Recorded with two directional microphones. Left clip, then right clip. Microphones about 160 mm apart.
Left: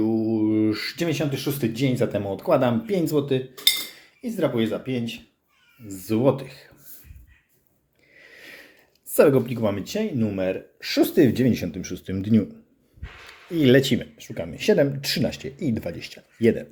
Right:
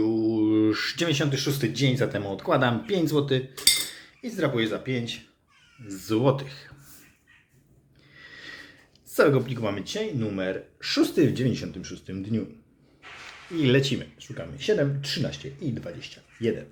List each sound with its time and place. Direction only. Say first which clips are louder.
0.0 s speech: left 1 dB; 15° left (ahead or behind)
8.1 s a sound: right 2 dB; 15° left (ahead or behind)
9.1 s speech: left 4 dB; 25° left (ahead or behind)
13.6 s speech: left 5 dB; 25° left (ahead or behind)